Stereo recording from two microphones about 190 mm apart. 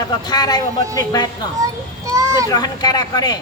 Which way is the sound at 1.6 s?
15° right (ahead or behind).